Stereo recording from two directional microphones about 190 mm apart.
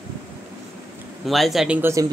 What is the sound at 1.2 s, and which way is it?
Speech, centre (ahead or behind).